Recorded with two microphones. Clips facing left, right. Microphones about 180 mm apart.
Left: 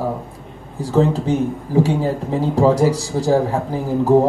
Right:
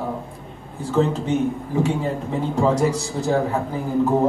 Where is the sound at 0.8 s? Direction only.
35° left (ahead or behind).